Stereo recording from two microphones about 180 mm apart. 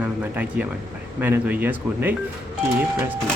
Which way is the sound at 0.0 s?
10° right (ahead or behind).